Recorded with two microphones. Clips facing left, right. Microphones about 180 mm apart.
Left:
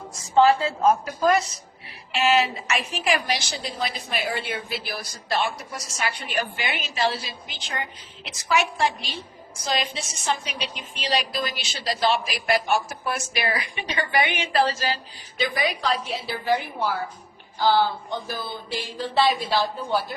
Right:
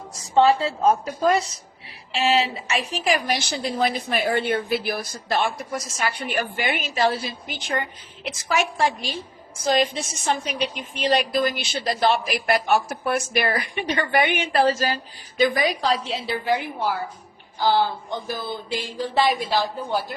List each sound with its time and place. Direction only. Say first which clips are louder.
0.3 s a woman's voice: even; 30° right (ahead or behind)
16.2 s speech: right 1 dB; 15° right (ahead or behind)